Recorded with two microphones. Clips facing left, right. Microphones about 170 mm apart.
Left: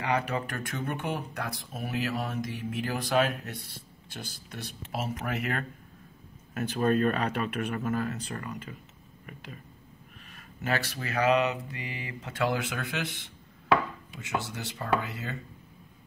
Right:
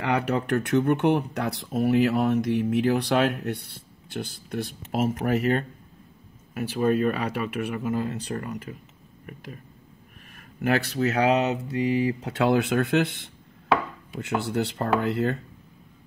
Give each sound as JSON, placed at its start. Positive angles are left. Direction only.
{"t": 0.0, "sound": "speech", "side_deg": -70}
{"t": 6.5, "sound": "speech", "side_deg": -10}
{"t": 8.0, "sound": "speech", "side_deg": -35}
{"t": 10.6, "sound": "speech", "side_deg": -70}
{"t": 11.7, "sound": "speech", "side_deg": -30}
{"t": 12.3, "sound": "speech", "side_deg": -65}